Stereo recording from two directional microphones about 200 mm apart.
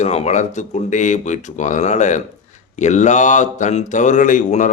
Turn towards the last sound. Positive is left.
turn(degrees=40)  # may be behind; listen again after turning